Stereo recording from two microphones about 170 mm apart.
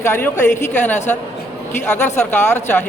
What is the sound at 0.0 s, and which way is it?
A man's voice, 15° left (ahead or behind).